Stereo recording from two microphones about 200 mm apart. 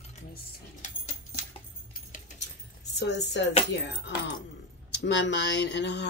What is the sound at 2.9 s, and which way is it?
Speech, 60° left (ahead or behind).